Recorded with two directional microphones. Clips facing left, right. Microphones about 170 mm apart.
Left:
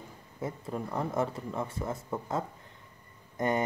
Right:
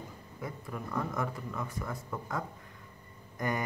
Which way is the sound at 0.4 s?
25° left (ahead or behind).